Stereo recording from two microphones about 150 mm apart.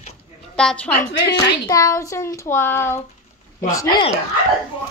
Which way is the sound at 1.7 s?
20° left (ahead or behind).